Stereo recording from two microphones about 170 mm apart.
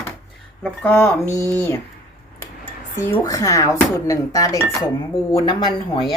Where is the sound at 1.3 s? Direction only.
20° right (ahead or behind).